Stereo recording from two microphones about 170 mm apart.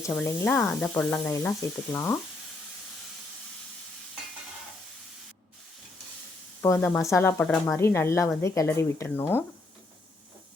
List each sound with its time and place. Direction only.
0.3 s speech: 15° left (ahead or behind)
6.6 s speech: 15° left (ahead or behind)